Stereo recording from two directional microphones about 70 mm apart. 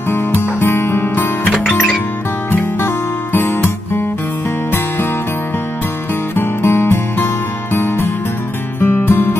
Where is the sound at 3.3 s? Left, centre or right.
Left.